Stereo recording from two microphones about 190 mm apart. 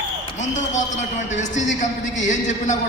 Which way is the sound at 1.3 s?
40° left (ahead or behind).